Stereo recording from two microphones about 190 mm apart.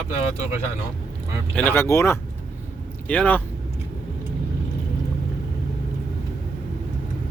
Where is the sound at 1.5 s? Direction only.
10° left (ahead or behind).